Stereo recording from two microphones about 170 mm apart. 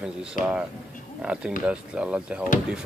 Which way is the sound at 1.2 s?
5° right (ahead or behind).